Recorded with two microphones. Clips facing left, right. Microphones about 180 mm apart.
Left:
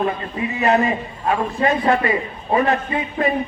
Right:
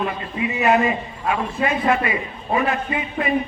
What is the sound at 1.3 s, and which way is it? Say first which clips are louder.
Speech: left 3 dB; 35° left (ahead or behind).